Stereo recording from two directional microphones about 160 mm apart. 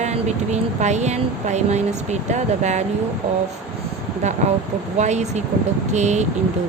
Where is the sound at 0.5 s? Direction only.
45° right (ahead or behind).